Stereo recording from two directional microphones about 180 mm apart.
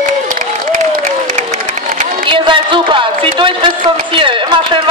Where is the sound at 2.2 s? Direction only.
30° right (ahead or behind).